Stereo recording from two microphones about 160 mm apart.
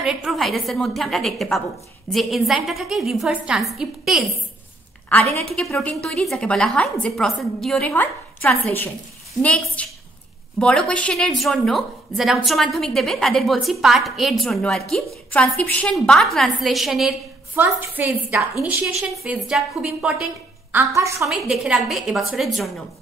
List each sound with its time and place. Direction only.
0.0 s a woman's voice: centre (ahead or behind)
5.4 s a woman's voice: 5° left (ahead or behind)
7.9 s a woman's voice: 10° left (ahead or behind)
17.6 s a woman's voice: 10° right (ahead or behind)
20.7 s a woman's voice: 20° right (ahead or behind)
21.3 s a woman's voice: 5° right (ahead or behind)